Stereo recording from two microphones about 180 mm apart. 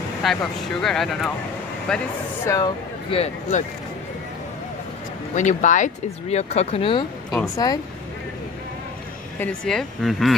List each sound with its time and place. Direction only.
0.2 s speech: centre (ahead or behind)
2.4 s speech: 15° left (ahead or behind)
3.1 s speech: 40° left (ahead or behind)
5.3 s speech: 45° left (ahead or behind); by 7.8 s 20° left (ahead or behind)
9.4 s speech: 5° left (ahead or behind)